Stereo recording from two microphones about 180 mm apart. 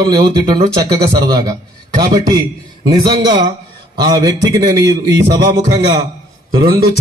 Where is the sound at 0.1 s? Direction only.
20° right (ahead or behind).